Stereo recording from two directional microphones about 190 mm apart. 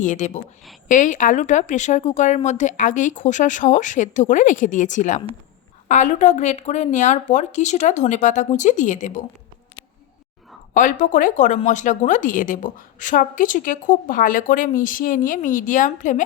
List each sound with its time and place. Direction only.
0.0 s speech: 40° left (ahead or behind)
10.8 s speech: 45° left (ahead or behind)